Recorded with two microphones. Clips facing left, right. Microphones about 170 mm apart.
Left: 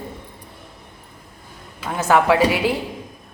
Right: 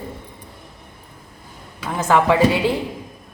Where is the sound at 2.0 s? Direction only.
10° left (ahead or behind).